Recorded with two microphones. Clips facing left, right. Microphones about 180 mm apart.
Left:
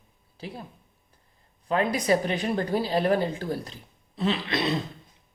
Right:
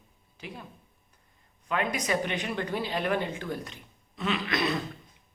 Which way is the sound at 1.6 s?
35° left (ahead or behind).